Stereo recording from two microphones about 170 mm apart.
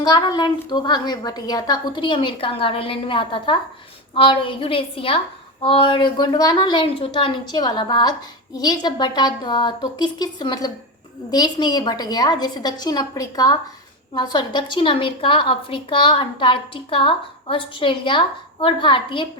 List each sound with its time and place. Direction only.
0.0 s a woman's voice: 25° left (ahead or behind)